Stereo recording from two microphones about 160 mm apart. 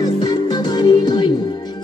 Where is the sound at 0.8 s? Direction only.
25° left (ahead or behind).